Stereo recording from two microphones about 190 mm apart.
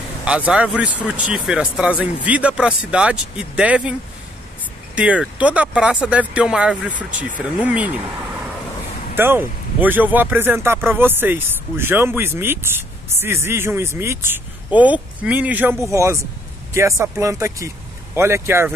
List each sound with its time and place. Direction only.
0.2 s speech: 5° right (ahead or behind)
4.9 s speech: 5° right (ahead or behind)
9.1 s speech: 10° right (ahead or behind)